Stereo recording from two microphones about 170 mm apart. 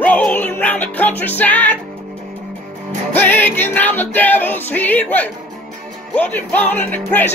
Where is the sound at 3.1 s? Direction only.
10° left (ahead or behind).